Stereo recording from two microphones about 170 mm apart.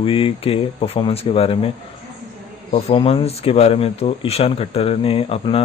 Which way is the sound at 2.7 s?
35° left (ahead or behind).